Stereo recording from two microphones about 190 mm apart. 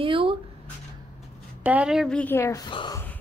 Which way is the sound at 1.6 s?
5° right (ahead or behind).